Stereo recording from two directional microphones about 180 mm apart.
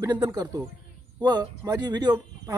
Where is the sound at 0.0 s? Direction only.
20° right (ahead or behind).